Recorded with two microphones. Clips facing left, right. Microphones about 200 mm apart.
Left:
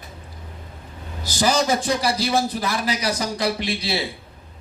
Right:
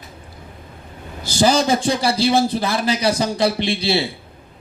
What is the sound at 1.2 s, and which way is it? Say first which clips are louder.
A man's voice: right 4 dB; 30° right (ahead or behind).